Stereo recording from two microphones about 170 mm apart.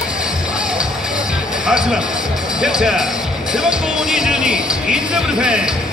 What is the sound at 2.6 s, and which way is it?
Speech, 5° right (ahead or behind).